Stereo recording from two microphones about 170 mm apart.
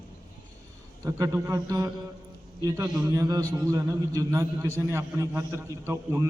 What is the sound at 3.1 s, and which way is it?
A man's voice, 20° right (ahead or behind).